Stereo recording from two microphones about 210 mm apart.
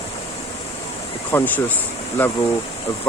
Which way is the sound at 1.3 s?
10° left (ahead or behind).